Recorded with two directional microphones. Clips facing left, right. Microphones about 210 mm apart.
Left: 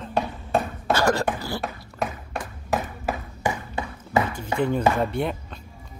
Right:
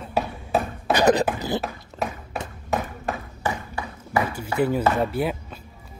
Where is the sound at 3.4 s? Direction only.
20° left (ahead or behind).